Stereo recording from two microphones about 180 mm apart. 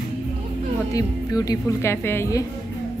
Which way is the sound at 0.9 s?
20° left (ahead or behind).